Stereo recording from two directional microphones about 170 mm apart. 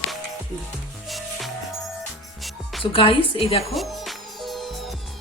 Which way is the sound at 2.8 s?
30° left (ahead or behind).